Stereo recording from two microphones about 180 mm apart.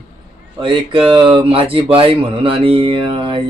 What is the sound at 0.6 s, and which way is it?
Speech, 30° right (ahead or behind).